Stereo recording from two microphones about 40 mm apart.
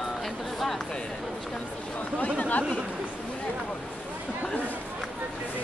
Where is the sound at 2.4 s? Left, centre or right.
Left.